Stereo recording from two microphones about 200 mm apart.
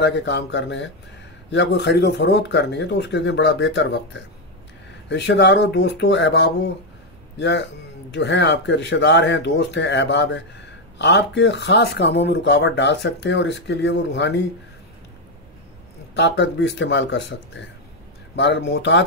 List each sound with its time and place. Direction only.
0.0 s speech: 60° left (ahead or behind)
16.2 s speech: 60° left (ahead or behind)